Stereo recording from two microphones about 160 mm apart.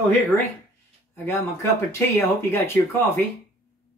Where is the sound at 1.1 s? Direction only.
15° left (ahead or behind).